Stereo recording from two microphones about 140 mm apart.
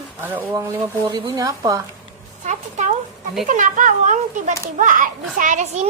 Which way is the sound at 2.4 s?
55° right (ahead or behind).